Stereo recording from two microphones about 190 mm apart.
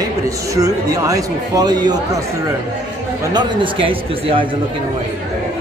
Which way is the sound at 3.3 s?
25° right (ahead or behind).